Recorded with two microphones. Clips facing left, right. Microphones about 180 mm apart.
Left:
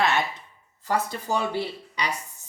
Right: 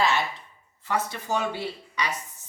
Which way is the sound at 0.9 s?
35° left (ahead or behind).